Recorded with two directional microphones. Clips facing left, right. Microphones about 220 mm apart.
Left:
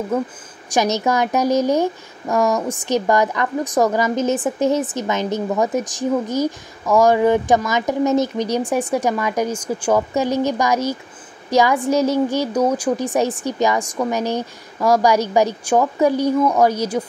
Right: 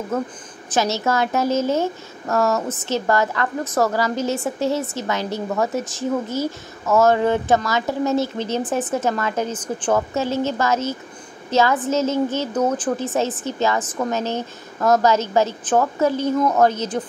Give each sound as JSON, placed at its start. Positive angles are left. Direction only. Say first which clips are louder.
{"t": 0.7, "sound": "speech", "louder": "left 2 dB", "side_deg": 15}